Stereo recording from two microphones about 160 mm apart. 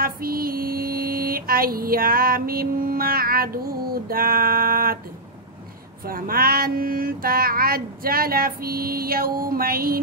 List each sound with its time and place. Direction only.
0.0 s mantra: 65° right (ahead or behind)
6.0 s child singing: 65° right (ahead or behind)